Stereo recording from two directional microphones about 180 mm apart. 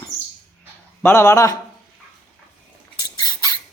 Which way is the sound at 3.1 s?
20° left (ahead or behind).